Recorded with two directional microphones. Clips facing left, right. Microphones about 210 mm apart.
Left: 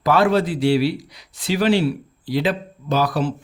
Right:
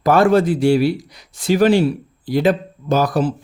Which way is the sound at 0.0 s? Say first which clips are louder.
Right 4 dB; 45° right (ahead or behind).